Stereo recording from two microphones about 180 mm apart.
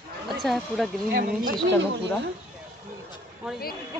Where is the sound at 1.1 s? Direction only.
55° right (ahead or behind).